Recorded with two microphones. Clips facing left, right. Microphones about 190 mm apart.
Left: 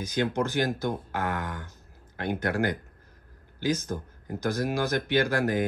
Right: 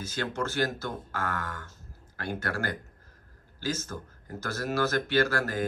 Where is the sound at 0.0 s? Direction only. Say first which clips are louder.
Left 5 dB; 15° left (ahead or behind).